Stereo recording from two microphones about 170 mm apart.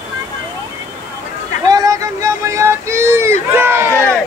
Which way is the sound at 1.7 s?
20° right (ahead or behind).